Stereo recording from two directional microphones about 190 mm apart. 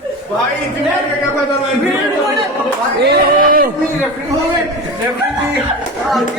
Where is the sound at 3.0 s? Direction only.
45° right (ahead or behind).